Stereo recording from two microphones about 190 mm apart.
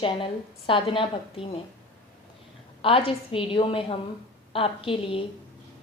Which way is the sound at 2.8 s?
30° left (ahead or behind).